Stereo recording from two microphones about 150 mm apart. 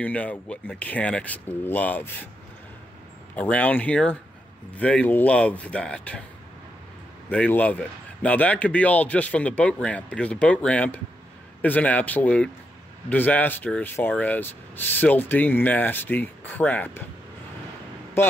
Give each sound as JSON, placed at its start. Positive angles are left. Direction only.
{"t": 0.0, "sound": "rub", "side_deg": 10}
{"t": 3.3, "sound": "rub", "side_deg": 10}
{"t": 7.2, "sound": "rub", "side_deg": 10}
{"t": 18.2, "sound": "speech", "side_deg": 15}